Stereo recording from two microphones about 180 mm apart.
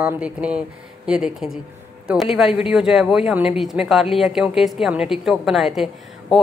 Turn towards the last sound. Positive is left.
turn(degrees=0)  # may be behind; listen again after turning